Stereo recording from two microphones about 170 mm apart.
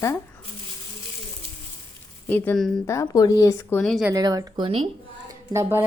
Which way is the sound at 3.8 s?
Centre (ahead or behind).